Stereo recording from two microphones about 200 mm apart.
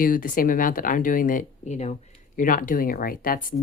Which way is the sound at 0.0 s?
45° left (ahead or behind).